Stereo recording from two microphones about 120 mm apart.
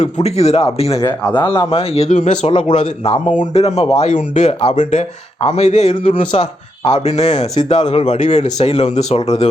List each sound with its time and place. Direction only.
0.0 s speech: 65° left (ahead or behind)
2.5 s speech: 50° left (ahead or behind); by 5.9 s 70° left (ahead or behind)
6.1 s speech: 55° left (ahead or behind)
7.7 s speech: 55° left (ahead or behind)